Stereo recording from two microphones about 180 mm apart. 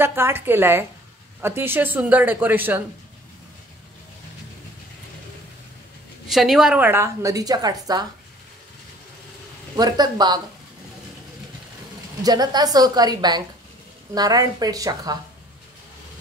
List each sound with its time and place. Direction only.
0.0 s a woman's voice: 15° right (ahead or behind)
6.2 s a woman's voice: centre (ahead or behind); by 8.0 s 20° right (ahead or behind)
9.8 s a woman's voice: 20° right (ahead or behind)
12.2 s a woman's voice: 20° right (ahead or behind)